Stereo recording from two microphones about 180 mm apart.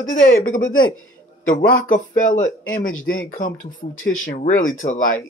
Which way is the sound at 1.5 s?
50° left (ahead or behind).